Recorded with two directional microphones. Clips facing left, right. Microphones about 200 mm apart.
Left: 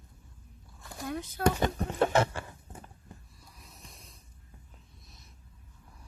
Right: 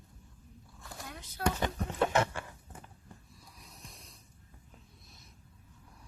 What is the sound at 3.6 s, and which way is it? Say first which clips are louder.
Snort: left 1 dB; centre (ahead or behind).